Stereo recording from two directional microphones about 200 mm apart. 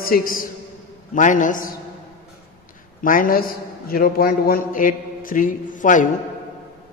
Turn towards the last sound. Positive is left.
turn(degrees=40)  # may be behind; listen again after turning